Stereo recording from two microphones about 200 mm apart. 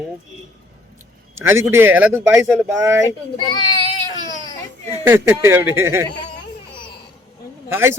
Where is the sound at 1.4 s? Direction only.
15° right (ahead or behind).